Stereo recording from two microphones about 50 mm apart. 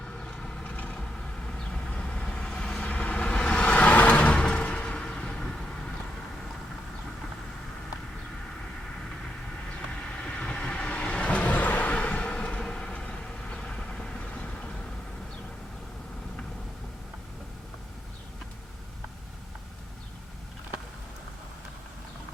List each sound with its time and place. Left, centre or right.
0.3 s vehicle: centre
2.7 s a sound: left
10.1 s vehicle: left